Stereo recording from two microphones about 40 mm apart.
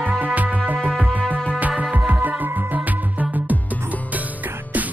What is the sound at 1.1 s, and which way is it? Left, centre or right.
Music, left.